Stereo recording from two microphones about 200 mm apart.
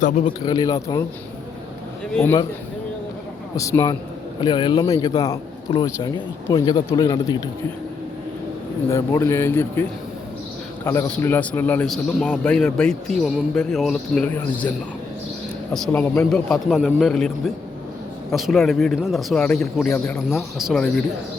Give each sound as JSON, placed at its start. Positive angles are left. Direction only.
{"t": 0.3, "sound": "speech", "side_deg": 20}
{"t": 2.1, "sound": "a man's voice", "side_deg": 10}
{"t": 3.5, "sound": "a man's voice", "side_deg": 15}
{"t": 8.9, "sound": "a man's voice", "side_deg": 15}
{"t": 10.8, "sound": "a man's voice", "side_deg": 10}
{"t": 15.7, "sound": "a man's voice", "side_deg": 5}